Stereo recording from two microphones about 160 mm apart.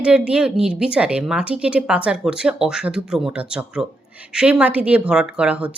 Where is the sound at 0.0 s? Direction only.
5° right (ahead or behind).